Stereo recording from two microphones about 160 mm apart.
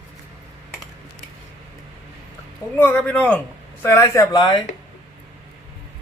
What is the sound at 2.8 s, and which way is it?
Speech, 10° left (ahead or behind).